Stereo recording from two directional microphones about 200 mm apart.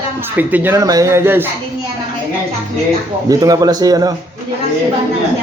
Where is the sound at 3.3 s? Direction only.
15° right (ahead or behind).